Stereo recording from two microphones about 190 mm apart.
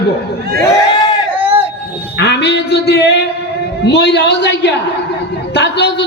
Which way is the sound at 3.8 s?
65° left (ahead or behind).